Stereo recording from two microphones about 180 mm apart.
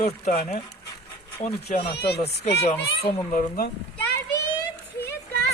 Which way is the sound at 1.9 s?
70° left (ahead or behind).